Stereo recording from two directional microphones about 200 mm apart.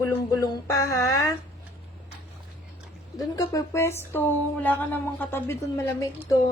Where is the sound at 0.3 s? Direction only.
20° left (ahead or behind).